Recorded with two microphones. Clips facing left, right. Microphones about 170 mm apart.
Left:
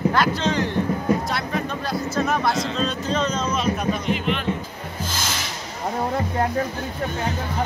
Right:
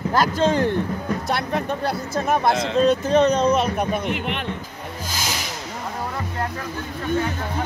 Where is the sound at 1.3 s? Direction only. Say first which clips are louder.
Right 2 dB; 65° right (ahead or behind).